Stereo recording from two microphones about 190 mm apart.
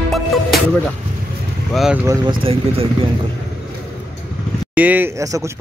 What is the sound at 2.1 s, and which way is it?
Speech, 25° right (ahead or behind).